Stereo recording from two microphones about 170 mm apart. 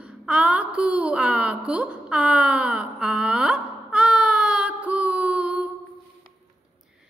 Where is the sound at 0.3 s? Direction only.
5° right (ahead or behind).